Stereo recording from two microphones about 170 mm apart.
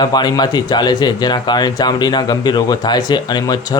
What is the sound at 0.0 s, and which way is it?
Speech, 25° left (ahead or behind).